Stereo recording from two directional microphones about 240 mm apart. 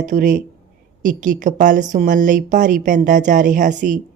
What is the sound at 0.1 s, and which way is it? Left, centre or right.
A woman's voice, right.